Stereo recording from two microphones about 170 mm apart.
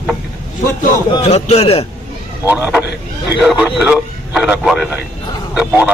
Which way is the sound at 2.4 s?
10° right (ahead or behind).